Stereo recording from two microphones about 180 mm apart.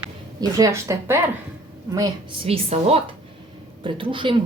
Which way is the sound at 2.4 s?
30° right (ahead or behind).